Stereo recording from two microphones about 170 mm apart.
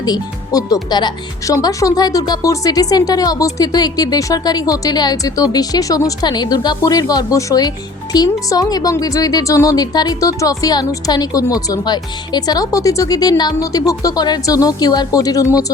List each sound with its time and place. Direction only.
0.0 s speech: 20° left (ahead or behind)